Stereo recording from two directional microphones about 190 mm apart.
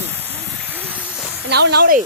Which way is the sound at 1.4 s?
60° right (ahead or behind).